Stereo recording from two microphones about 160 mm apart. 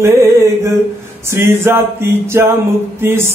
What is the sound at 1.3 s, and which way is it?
Speech, 15° right (ahead or behind).